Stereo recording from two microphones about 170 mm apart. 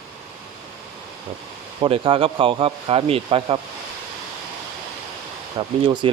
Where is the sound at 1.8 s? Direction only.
30° right (ahead or behind).